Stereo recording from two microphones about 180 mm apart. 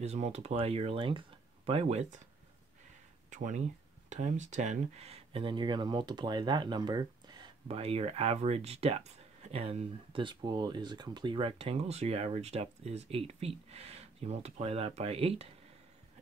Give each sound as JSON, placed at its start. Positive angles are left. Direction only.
{"t": 0.0, "sound": "speech", "side_deg": -35}
{"t": 3.3, "sound": "speech", "side_deg": -45}
{"t": 7.6, "sound": "speech", "side_deg": -35}